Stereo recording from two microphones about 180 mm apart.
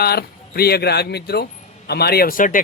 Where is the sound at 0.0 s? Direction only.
60° left (ahead or behind).